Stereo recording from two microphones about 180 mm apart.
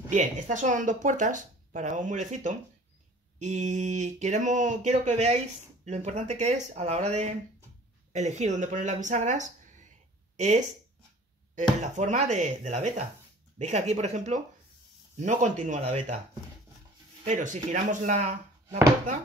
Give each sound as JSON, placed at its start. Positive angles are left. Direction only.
{"t": 0.1, "sound": "speech", "side_deg": -45}
{"t": 11.8, "sound": "speech", "side_deg": -40}
{"t": 17.2, "sound": "speech", "side_deg": -45}